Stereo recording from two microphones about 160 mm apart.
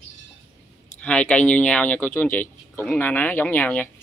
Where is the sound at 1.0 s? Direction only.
10° left (ahead or behind).